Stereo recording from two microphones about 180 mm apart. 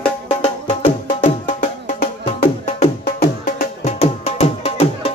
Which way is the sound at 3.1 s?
40° left (ahead or behind).